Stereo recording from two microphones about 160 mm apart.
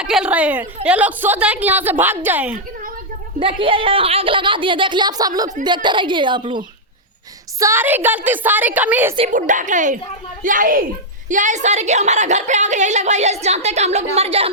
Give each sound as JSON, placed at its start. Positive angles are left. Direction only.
{"t": 0.0, "sound": "a woman's voice", "side_deg": -5}
{"t": 3.4, "sound": "a woman's voice", "side_deg": -35}
{"t": 7.6, "sound": "a woman's voice", "side_deg": -15}
{"t": 9.3, "sound": "a woman's voice", "side_deg": -50}